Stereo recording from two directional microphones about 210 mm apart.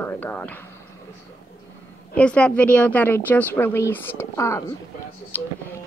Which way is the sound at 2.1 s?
5° left (ahead or behind).